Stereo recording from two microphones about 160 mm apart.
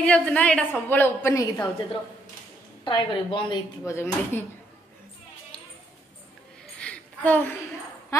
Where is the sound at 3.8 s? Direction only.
15° left (ahead or behind).